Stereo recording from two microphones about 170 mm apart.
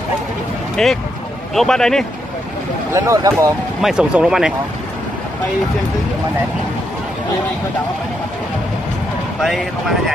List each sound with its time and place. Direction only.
0.8 s speech: 5° left (ahead or behind)
2.9 s speech: 15° right (ahead or behind)
3.8 s speech: 5° right (ahead or behind)
9.4 s speech: centre (ahead or behind)